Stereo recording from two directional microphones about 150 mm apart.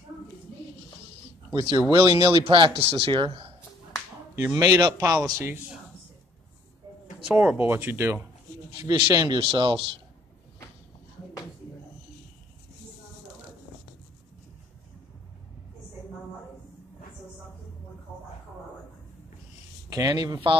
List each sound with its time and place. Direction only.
1.5 s speech: 30° right (ahead or behind)
4.4 s speech: 20° right (ahead or behind)
7.2 s speech: 10° right (ahead or behind); by 9.8 s 35° right (ahead or behind)
19.9 s speech: 25° right (ahead or behind)